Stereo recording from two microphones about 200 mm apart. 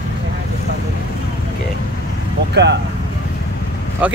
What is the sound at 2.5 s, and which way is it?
Speech, 60° right (ahead or behind).